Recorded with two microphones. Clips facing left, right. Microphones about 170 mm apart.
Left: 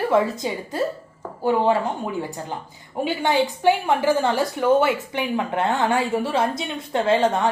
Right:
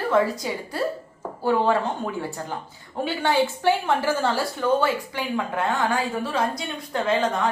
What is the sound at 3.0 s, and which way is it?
A woman's voice, 15° left (ahead or behind).